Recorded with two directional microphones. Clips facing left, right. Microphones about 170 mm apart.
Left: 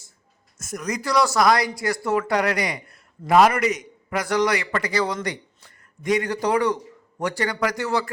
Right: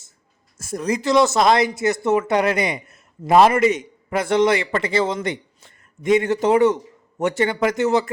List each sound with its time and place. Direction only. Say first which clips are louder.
0.6 s speech: right 6 dB; 30° right (ahead or behind)